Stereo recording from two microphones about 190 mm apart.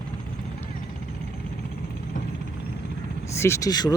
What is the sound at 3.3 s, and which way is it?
Speech, 15° left (ahead or behind).